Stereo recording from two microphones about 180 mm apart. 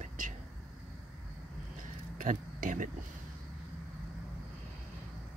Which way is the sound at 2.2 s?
45° right (ahead or behind).